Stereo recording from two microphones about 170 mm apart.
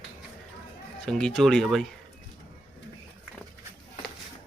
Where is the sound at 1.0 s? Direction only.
5° left (ahead or behind).